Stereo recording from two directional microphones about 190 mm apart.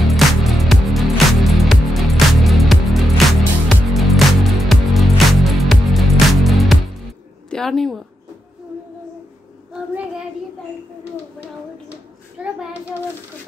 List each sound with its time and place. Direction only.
0.0 s music: centre (ahead or behind)
7.4 s a sound: 5° left (ahead or behind)
12.4 s child singing: 5° right (ahead or behind)